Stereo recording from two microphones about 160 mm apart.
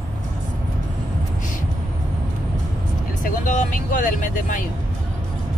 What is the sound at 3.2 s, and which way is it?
Speech, 55° left (ahead or behind).